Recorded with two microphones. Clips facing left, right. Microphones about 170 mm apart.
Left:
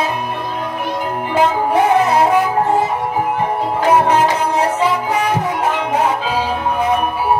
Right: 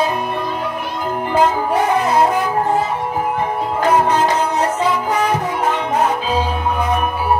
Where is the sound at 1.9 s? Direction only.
65° left (ahead or behind).